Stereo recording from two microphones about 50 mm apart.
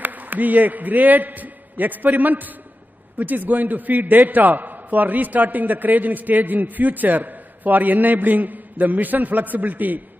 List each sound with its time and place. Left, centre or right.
0.0 s a man's voice: right